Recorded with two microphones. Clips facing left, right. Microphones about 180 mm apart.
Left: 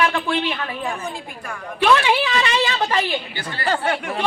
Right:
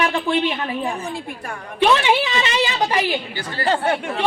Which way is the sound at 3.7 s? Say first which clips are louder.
Right 2 dB; 25° right (ahead or behind).